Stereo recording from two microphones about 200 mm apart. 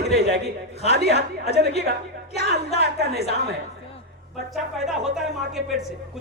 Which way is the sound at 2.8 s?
55° right (ahead or behind).